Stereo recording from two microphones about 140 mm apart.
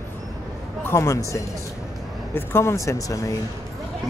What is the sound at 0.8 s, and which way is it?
Speech, 20° left (ahead or behind).